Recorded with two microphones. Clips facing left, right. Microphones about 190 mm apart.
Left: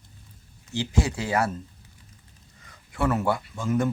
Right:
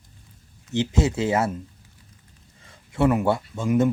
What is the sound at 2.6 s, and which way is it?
Speech, 25° right (ahead or behind).